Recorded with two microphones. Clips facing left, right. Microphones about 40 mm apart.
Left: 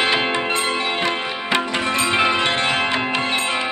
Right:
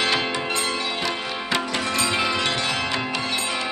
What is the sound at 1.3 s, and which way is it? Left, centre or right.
Music, left.